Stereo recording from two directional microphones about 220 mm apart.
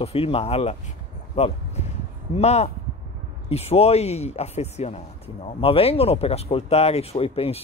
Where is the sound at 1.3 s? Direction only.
30° left (ahead or behind).